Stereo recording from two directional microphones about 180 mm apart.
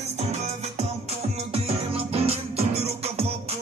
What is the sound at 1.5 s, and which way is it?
Music, 35° right (ahead or behind).